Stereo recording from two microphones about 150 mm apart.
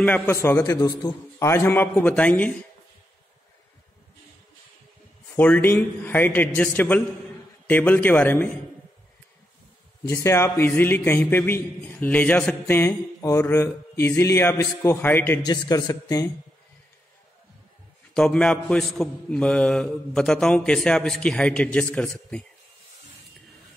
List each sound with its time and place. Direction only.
0.0 s a man's voice: 15° left (ahead or behind)
5.3 s a man's voice: 10° left (ahead or behind)
10.0 s a man's voice: 20° left (ahead or behind)
15.4 s a man's voice: 25° left (ahead or behind)
18.1 s a man's voice: 5° left (ahead or behind)